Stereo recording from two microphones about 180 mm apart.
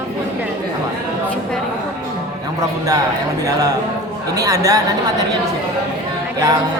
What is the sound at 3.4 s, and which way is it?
Speech, 20° right (ahead or behind).